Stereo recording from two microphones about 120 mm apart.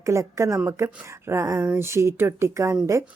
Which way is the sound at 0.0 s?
25° right (ahead or behind).